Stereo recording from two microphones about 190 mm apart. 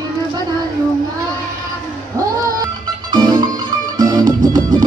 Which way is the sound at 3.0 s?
20° right (ahead or behind).